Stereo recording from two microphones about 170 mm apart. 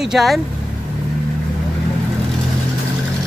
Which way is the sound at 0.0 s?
Centre (ahead or behind).